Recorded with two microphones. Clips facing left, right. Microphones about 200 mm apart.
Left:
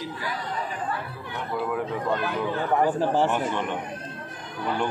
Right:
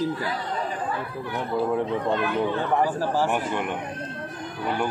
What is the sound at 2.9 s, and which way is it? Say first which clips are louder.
Speech: left 2 dB; 20° left (ahead or behind).